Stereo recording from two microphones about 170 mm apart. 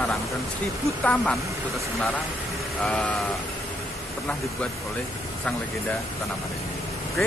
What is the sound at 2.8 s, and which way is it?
Speech, 10° left (ahead or behind).